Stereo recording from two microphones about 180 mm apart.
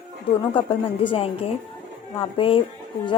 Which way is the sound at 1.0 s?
30° left (ahead or behind).